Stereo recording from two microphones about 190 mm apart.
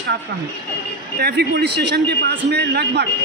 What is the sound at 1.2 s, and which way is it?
A man's voice, 60° right (ahead or behind).